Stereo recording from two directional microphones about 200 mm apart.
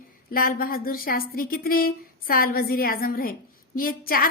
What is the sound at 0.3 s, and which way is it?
A woman's voice, 45° left (ahead or behind).